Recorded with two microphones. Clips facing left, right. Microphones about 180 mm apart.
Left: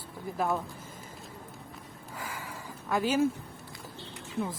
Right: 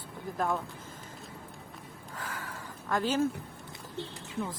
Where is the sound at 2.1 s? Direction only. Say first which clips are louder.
Left 1 dB; 10° left (ahead or behind).